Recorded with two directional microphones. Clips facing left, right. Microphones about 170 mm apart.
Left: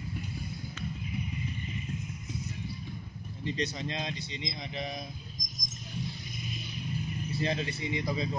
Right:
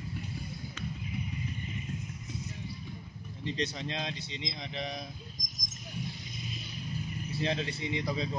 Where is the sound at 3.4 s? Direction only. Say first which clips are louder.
Left 1 dB; 5° left (ahead or behind).